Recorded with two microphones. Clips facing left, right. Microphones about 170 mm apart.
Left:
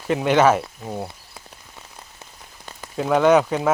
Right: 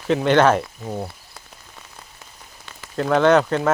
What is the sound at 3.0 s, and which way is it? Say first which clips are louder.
Speech: even; 10° left (ahead or behind).